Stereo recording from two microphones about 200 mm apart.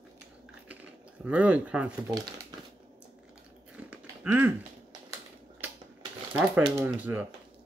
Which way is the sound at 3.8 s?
5° right (ahead or behind).